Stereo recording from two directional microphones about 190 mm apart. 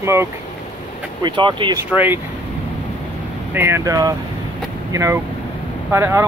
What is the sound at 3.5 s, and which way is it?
Speech, 10° right (ahead or behind).